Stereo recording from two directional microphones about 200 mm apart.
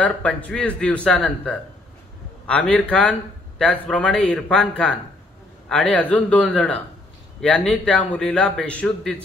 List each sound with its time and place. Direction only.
0.0 s a man's voice: 5° left (ahead or behind)